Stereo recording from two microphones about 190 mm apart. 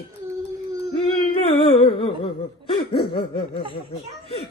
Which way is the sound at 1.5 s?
30° left (ahead or behind).